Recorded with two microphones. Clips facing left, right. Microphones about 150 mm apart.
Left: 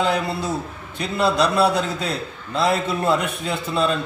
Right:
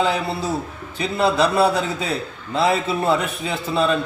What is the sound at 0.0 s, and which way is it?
Speech, centre (ahead or behind).